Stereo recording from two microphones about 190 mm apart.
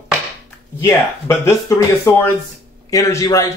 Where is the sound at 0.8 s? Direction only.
15° left (ahead or behind).